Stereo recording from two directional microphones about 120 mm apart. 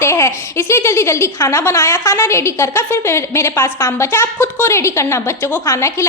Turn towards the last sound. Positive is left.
turn(degrees=25)  # may be behind; listen again after turning